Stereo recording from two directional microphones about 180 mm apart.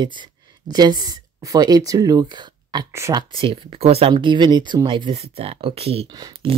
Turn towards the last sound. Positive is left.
turn(degrees=-30)  # may be behind; listen again after turning